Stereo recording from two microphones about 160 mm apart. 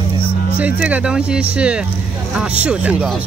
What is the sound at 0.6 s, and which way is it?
Speech, 10° right (ahead or behind).